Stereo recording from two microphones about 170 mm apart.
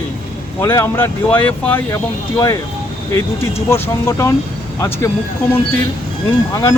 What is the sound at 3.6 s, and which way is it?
Speech, 15° left (ahead or behind).